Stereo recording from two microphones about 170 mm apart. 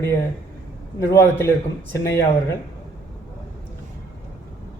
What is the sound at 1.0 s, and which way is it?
A man's voice, 15° left (ahead or behind).